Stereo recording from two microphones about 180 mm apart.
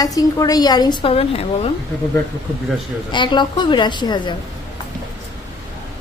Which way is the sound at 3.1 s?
25° left (ahead or behind).